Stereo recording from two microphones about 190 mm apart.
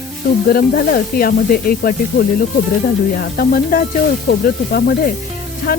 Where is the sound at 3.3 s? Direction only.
50° left (ahead or behind).